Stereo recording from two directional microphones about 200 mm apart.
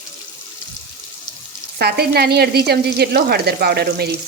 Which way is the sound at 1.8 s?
55° right (ahead or behind).